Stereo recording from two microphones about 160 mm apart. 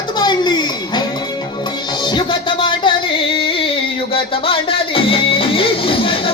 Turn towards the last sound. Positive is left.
turn(degrees=35)  # may be behind; listen again after turning